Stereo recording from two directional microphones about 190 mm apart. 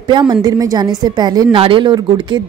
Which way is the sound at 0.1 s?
20° right (ahead or behind).